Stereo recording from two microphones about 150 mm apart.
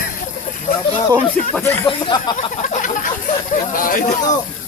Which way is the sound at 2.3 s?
55° left (ahead or behind).